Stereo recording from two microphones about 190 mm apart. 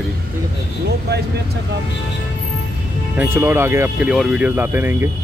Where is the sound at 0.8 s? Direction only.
60° right (ahead or behind).